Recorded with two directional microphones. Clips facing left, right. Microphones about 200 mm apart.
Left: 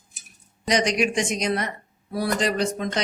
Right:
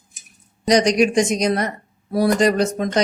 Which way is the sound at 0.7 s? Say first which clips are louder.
Right 7 dB; 40° right (ahead or behind).